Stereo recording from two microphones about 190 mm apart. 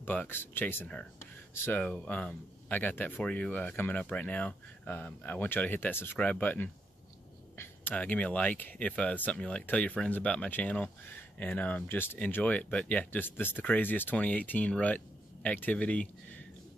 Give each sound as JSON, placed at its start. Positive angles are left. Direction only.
{"t": 0.0, "sound": "speech", "side_deg": 10}